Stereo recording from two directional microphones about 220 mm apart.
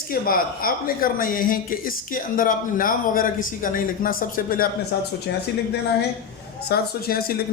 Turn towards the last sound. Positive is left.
turn(degrees=45)  # may be behind; listen again after turning